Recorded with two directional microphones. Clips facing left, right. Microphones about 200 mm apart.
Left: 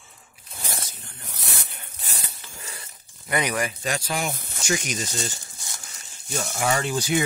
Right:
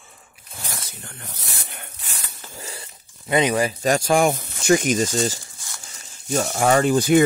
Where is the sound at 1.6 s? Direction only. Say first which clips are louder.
Right 5 dB; 65° right (ahead or behind).